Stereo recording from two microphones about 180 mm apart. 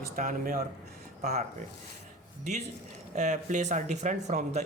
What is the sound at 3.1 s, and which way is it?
Speech, 40° right (ahead or behind).